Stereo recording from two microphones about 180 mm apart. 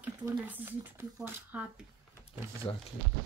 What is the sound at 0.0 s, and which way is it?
Speech, 10° right (ahead or behind).